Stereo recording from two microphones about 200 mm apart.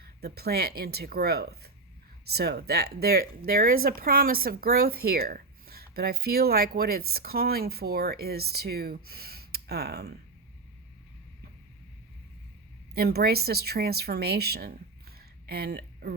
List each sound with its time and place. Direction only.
0.2 s speech: 50° right (ahead or behind)
12.9 s speech: 50° right (ahead or behind)